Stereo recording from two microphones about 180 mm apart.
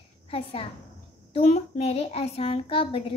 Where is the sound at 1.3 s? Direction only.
40° left (ahead or behind).